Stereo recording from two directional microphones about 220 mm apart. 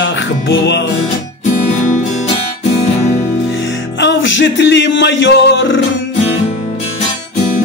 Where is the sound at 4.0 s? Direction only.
55° left (ahead or behind).